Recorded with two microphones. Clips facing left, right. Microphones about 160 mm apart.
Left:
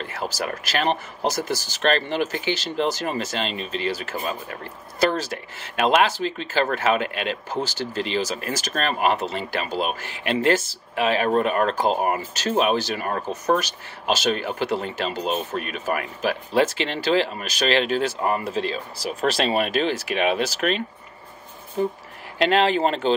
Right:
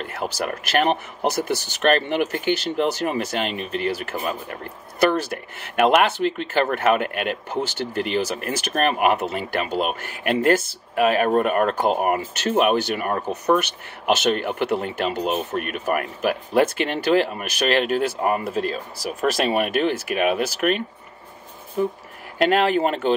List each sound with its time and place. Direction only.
0.1 s speech: 55° right (ahead or behind)
22.8 s speech: 30° left (ahead or behind)